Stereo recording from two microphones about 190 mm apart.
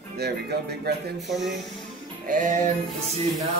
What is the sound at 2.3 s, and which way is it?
Music, 40° right (ahead or behind).